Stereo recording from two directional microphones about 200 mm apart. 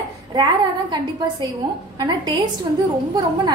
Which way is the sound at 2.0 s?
20° right (ahead or behind).